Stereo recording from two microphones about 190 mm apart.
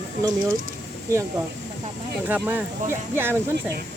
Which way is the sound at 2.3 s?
10° right (ahead or behind).